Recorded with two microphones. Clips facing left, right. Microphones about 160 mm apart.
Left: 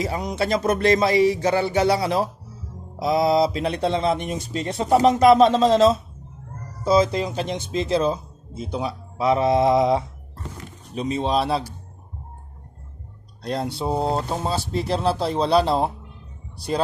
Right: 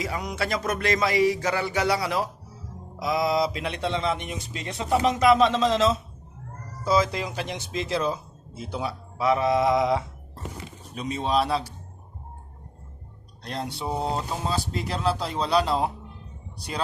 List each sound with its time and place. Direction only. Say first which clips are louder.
0.0 s a man's voice: left 5 dB; 30° left (ahead or behind)
13.4 s a man's voice: left 6 dB; 30° left (ahead or behind)